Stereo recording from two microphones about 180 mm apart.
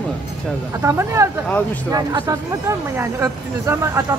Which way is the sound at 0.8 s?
15° right (ahead or behind).